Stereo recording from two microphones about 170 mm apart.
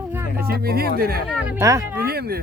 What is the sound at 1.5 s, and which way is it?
Speech, 20° right (ahead or behind).